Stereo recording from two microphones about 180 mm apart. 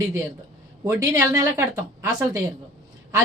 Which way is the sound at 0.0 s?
15° right (ahead or behind).